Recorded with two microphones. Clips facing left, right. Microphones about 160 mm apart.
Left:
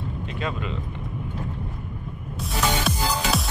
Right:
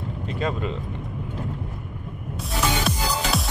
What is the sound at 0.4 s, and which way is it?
Speech, 40° right (ahead or behind).